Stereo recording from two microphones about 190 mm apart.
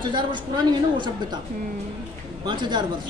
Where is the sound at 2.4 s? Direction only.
25° right (ahead or behind).